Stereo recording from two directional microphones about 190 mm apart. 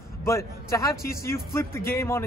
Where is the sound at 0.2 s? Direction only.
15° left (ahead or behind).